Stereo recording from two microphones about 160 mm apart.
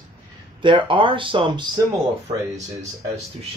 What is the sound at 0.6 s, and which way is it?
Speech, 30° right (ahead or behind).